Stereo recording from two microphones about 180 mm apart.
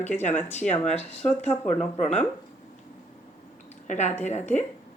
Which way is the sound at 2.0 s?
40° left (ahead or behind).